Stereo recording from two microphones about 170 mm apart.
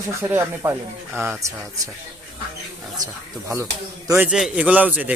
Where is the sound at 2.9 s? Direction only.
20° right (ahead or behind).